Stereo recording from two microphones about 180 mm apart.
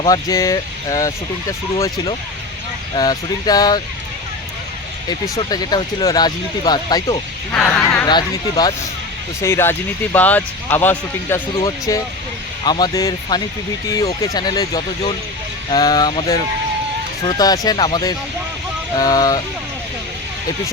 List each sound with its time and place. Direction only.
0.0 s speech: 20° left (ahead or behind)
2.9 s speech: 20° left (ahead or behind)
5.4 s speech: 20° left (ahead or behind)
7.5 s speech: 10° left (ahead or behind)
8.0 s speech: 25° left (ahead or behind)